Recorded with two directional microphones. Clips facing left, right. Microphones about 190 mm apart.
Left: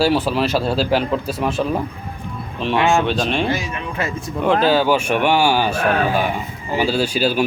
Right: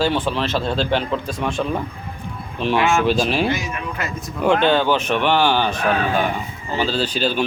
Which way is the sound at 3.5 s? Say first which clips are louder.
Left 1 dB; 25° left (ahead or behind).